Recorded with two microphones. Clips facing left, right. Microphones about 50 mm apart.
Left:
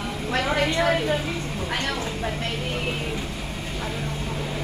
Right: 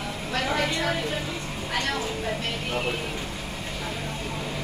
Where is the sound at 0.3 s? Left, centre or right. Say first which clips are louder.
Left 3 dB; left.